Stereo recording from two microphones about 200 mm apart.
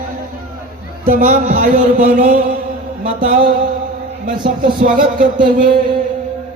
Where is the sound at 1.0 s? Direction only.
40° right (ahead or behind).